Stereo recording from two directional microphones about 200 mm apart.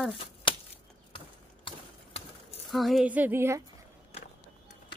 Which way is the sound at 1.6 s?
30° left (ahead or behind).